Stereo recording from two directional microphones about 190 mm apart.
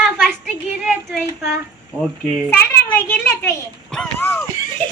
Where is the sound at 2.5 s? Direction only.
10° left (ahead or behind).